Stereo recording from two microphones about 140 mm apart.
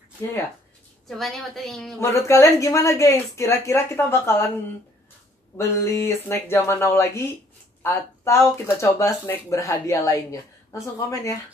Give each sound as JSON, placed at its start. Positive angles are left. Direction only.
{"t": 1.0, "sound": "a woman's voice", "side_deg": 0}
{"t": 2.0, "sound": "speech", "side_deg": 20}
{"t": 5.6, "sound": "a woman's voice", "side_deg": 20}